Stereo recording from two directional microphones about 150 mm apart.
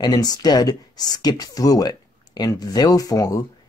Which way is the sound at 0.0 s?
25° left (ahead or behind).